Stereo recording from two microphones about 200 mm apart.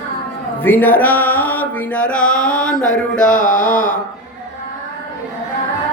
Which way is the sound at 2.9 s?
40° left (ahead or behind).